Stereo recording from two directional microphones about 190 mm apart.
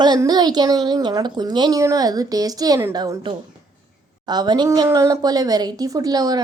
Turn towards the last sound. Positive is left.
turn(degrees=-20)  # may be behind; listen again after turning